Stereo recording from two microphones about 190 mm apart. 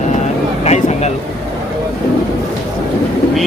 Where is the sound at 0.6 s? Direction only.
35° left (ahead or behind).